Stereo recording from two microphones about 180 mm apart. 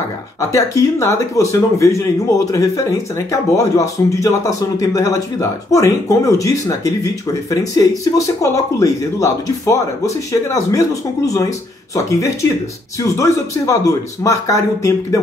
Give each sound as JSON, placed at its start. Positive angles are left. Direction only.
{"t": 0.5, "sound": "speech", "side_deg": 20}